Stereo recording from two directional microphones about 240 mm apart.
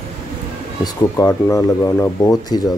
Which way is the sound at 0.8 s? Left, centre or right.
Centre.